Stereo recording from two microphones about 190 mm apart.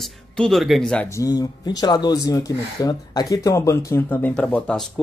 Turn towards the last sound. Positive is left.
turn(degrees=5)  # may be behind; listen again after turning